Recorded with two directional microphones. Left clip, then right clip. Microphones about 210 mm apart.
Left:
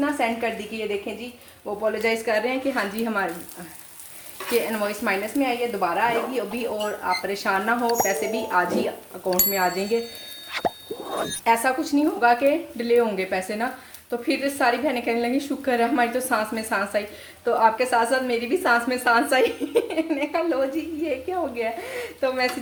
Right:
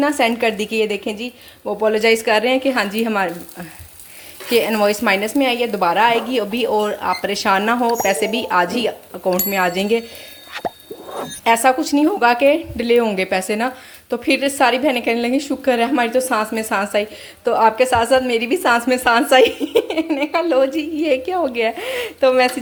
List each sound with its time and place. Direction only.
0.0 s a woman's voice: 45° right (ahead or behind)
4.5 s a woman's voice: 40° right (ahead or behind)
11.4 s a woman's voice: 35° right (ahead or behind)